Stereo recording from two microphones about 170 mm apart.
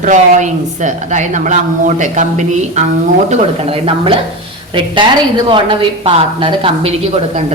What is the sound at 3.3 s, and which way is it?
Speech, 35° right (ahead or behind).